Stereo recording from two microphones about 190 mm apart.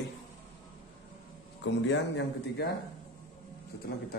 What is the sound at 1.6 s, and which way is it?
Speech, 70° left (ahead or behind).